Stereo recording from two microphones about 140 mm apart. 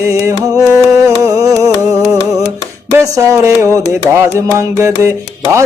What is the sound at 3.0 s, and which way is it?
Music, 25° right (ahead or behind).